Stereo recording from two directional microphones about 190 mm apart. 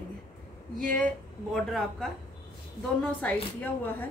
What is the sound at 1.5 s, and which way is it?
Speech, centre (ahead or behind).